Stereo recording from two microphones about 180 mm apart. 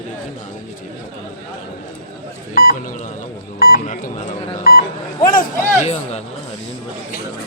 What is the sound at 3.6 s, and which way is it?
Beep, 55° left (ahead or behind).